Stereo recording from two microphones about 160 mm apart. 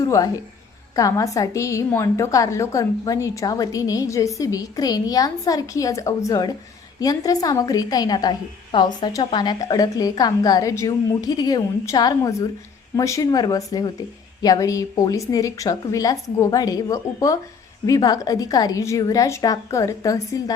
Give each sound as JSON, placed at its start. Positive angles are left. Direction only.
{"t": 0.0, "sound": "a woman's voice", "side_deg": 20}